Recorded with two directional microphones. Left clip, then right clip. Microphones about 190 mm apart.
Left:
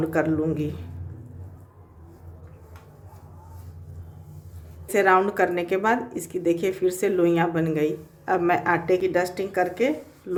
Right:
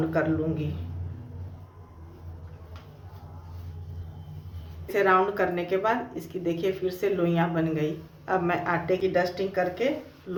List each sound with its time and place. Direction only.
0.1 s a woman's voice: 55° left (ahead or behind)
4.9 s a woman's voice: 50° left (ahead or behind)